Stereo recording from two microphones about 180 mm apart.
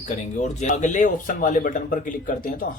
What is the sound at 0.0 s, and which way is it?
Speech, 40° left (ahead or behind).